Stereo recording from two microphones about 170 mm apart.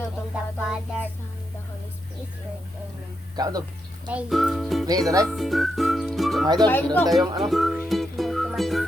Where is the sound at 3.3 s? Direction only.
20° right (ahead or behind).